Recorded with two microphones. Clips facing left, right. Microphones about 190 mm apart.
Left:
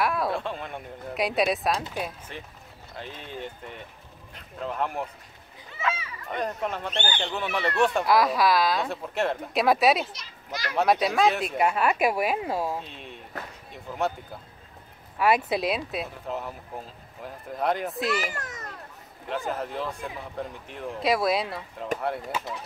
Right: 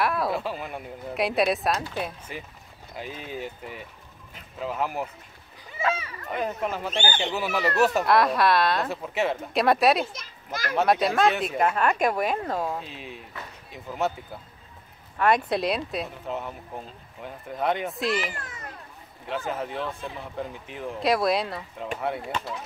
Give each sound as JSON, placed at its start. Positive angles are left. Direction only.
{"t": 0.0, "sound": "speech", "side_deg": 0}
{"t": 5.8, "sound": "children playing", "side_deg": -40}
{"t": 6.3, "sound": "speech", "side_deg": -5}
{"t": 10.1, "sound": "a child's voice", "side_deg": -50}
{"t": 10.7, "sound": "speech", "side_deg": 0}
{"t": 12.8, "sound": "speech", "side_deg": -5}
{"t": 15.1, "sound": "speech", "side_deg": 5}
{"t": 18.2, "sound": "a child's voice", "side_deg": 40}
{"t": 19.2, "sound": "speech", "side_deg": 0}